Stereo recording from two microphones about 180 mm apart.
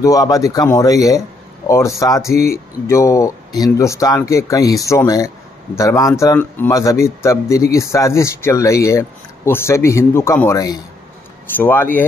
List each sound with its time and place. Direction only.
0.0 s speech: 20° left (ahead or behind)